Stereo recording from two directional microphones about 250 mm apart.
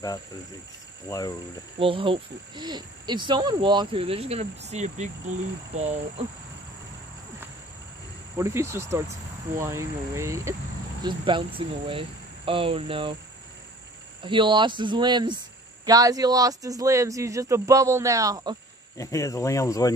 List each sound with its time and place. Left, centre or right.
1.0 s speech: centre
1.8 s speech: right
8.4 s speech: centre
14.2 s speech: centre
18.9 s speech: centre